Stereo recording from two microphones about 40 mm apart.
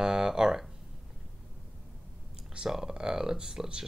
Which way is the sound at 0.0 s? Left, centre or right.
Centre.